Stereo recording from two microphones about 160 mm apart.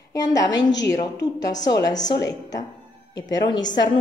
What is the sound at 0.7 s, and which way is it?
Speech, 90° left.